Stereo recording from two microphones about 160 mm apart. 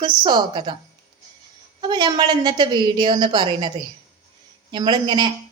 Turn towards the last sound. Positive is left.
turn(degrees=-30)  # may be behind; listen again after turning